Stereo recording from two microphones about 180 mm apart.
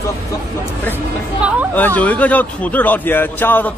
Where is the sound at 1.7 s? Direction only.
10° left (ahead or behind).